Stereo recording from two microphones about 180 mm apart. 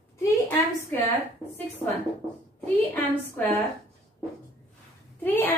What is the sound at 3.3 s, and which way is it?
Speech, 10° left (ahead or behind).